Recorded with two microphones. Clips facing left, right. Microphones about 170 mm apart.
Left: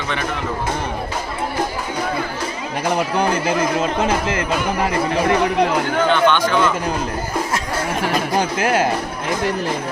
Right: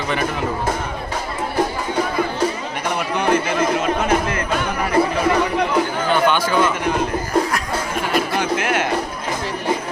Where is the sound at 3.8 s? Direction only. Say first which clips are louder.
Even; 30° left (ahead or behind).